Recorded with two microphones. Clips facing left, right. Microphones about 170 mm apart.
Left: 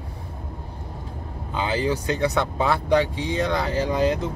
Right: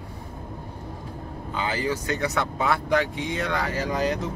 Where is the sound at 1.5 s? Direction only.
25° left (ahead or behind).